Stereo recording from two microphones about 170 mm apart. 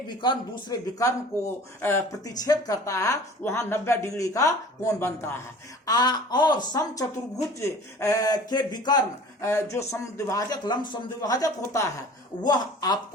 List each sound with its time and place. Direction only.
0.2 s speech: 25° left (ahead or behind)